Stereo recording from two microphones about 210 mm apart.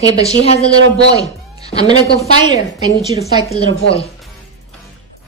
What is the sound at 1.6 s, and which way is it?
Music, 30° left (ahead or behind).